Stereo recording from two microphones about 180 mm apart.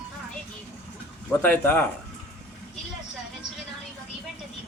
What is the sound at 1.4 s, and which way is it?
Speech, 10° left (ahead or behind).